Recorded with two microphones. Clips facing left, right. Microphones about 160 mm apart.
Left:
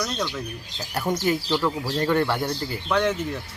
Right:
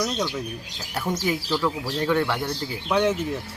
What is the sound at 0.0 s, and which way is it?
Speech, 10° right (ahead or behind).